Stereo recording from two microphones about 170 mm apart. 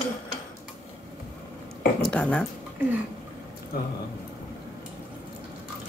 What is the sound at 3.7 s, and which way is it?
Speech, 65° left (ahead or behind).